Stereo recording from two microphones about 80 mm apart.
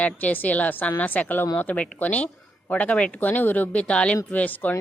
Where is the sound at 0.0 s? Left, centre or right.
Left.